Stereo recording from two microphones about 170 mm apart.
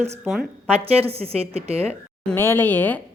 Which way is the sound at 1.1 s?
35° right (ahead or behind).